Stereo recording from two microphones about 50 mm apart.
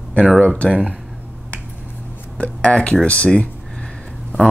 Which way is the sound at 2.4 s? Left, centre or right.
Left.